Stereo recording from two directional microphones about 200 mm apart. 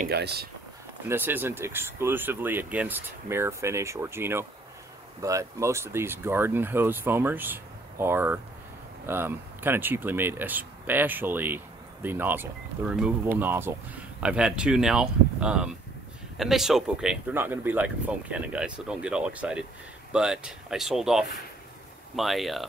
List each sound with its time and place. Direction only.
0.1 s speech: 55° right (ahead or behind)
1.0 s speech: 10° right (ahead or behind)